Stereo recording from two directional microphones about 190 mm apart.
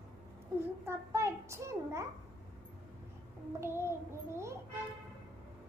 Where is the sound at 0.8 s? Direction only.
15° right (ahead or behind).